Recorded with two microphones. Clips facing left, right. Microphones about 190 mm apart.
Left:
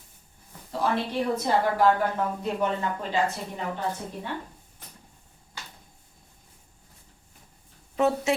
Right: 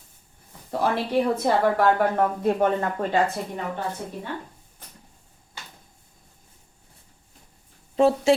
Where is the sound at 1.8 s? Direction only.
60° right (ahead or behind).